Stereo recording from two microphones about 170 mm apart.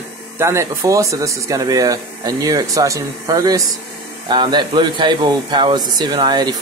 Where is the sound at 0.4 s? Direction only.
15° right (ahead or behind).